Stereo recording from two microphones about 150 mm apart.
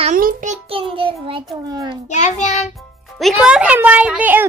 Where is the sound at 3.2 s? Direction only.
5° right (ahead or behind).